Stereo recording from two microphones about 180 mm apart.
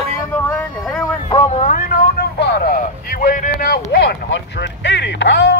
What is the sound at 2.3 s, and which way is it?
Speech, 60° left (ahead or behind).